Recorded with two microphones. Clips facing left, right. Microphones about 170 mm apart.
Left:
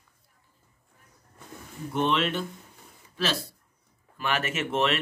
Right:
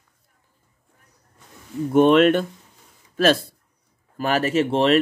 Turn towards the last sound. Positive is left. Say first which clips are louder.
# right 8 dB
turn(degrees=-35)  # may be behind; listen again after turning